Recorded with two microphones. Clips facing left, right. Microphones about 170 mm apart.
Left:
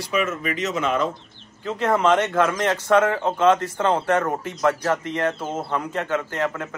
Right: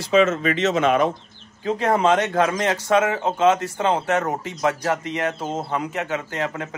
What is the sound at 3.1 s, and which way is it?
Speech, 20° right (ahead or behind).